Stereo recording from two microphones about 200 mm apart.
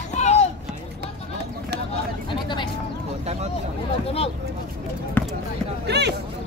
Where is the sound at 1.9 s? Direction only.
25° left (ahead or behind).